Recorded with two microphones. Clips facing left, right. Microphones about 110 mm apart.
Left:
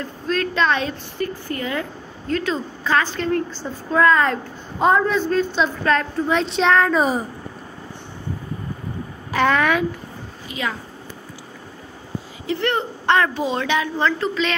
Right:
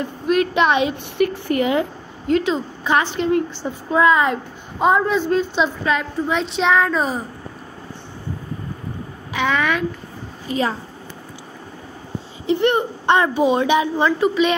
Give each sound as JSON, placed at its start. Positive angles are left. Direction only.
{"t": 0.0, "sound": "a woman's voice", "side_deg": -15}
{"t": 1.1, "sound": "speech", "side_deg": -75}
{"t": 1.5, "sound": "a woman's voice", "side_deg": -20}
{"t": 9.3, "sound": "a woman's voice", "side_deg": 0}
{"t": 10.5, "sound": "a woman's voice", "side_deg": -35}
{"t": 12.4, "sound": "a woman's voice", "side_deg": -20}